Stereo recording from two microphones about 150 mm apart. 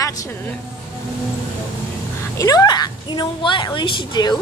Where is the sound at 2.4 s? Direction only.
25° left (ahead or behind).